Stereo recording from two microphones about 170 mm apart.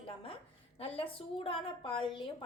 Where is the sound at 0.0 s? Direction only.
30° left (ahead or behind).